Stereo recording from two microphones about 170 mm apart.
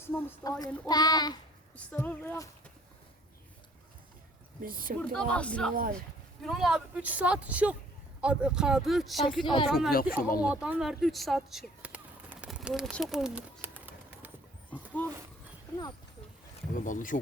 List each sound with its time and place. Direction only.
0.0 s speech: 15° left (ahead or behind)
1.7 s speech: 10° left (ahead or behind)
4.6 s a woman's voice: 55° right (ahead or behind)
5.1 s speech: 5° left (ahead or behind)
9.2 s speech: 25° left (ahead or behind)
9.6 s speech: centre (ahead or behind)
9.9 s speech: 60° left (ahead or behind)
10.4 s speech: 5° right (ahead or behind)
14.7 s a sound: 10° left (ahead or behind)
16.7 s speech: 50° left (ahead or behind)